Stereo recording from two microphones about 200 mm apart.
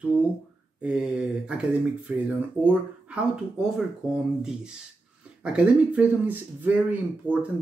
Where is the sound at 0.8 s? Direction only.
5° right (ahead or behind).